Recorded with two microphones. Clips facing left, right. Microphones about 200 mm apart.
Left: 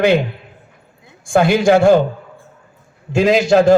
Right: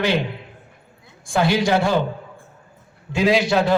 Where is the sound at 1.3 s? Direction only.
50° left (ahead or behind).